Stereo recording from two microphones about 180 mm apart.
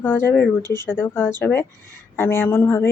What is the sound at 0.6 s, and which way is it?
Speech, 20° right (ahead or behind).